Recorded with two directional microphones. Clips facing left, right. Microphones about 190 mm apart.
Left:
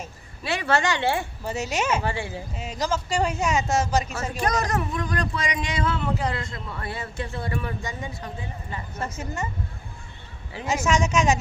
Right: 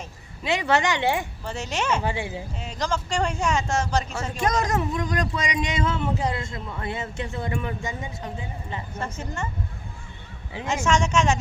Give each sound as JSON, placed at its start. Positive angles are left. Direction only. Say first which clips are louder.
{"t": 0.4, "sound": "speech", "louder": "right 1 dB", "side_deg": -20}
{"t": 1.5, "sound": "a man's voice", "louder": "left 2 dB", "side_deg": 10}
{"t": 2.0, "sound": "speech", "louder": "right 1 dB", "side_deg": -15}
{"t": 2.6, "sound": "a man's voice", "louder": "left 1 dB", "side_deg": 5}
{"t": 4.4, "sound": "speech", "louder": "right 1 dB", "side_deg": -20}
{"t": 9.1, "sound": "speech", "louder": "left 1 dB", "side_deg": 5}
{"t": 10.8, "sound": "a man's voice", "louder": "even", "side_deg": 5}